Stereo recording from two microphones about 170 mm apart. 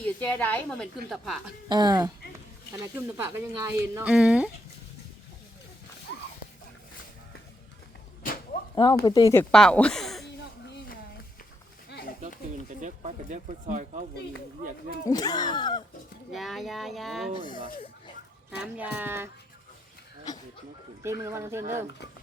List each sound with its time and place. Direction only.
0.0 s a woman's voice: 10° left (ahead or behind)
1.7 s speech: 25° right (ahead or behind)
4.0 s speech: 5° right (ahead or behind)
8.7 s speech: 25° left (ahead or behind)
9.3 s speech: 10° left (ahead or behind)
12.8 s speech: 45° right (ahead or behind)
15.0 s speech: 20° left (ahead or behind)
16.3 s a woman's voice: centre (ahead or behind)
18.6 s speech: 10° right (ahead or behind)
21.0 s speech: 15° right (ahead or behind)